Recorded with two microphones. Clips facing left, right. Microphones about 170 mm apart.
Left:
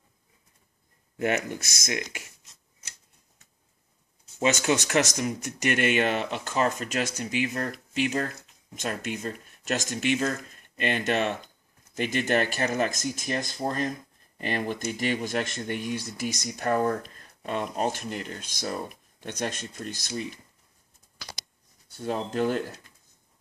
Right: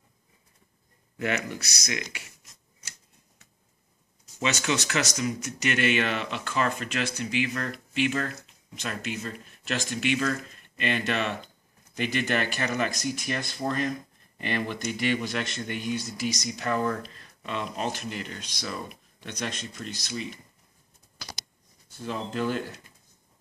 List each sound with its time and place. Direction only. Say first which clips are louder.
1.6 s speech: left 2 dB; 50° left (ahead or behind)
4.4 s speech: left 4 dB; 50° left (ahead or behind)
22.0 s speech: left 3 dB; 45° left (ahead or behind)